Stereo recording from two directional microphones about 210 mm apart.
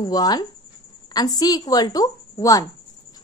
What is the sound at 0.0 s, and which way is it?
A woman's voice, 20° left (ahead or behind).